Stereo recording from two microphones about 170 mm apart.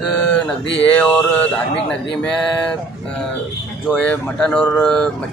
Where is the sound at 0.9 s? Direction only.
10° left (ahead or behind).